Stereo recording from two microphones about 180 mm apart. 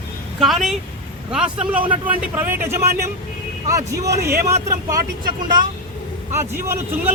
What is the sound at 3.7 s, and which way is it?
Speech, 20° right (ahead or behind).